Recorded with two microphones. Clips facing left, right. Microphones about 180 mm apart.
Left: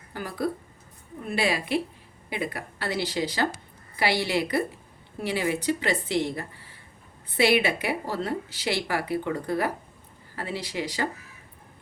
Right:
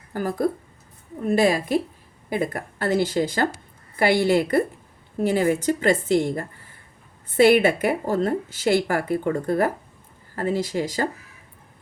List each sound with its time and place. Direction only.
0.1 s a woman's voice: 45° right (ahead or behind)